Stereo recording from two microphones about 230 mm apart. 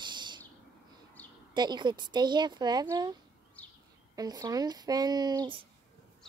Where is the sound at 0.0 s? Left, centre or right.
Centre.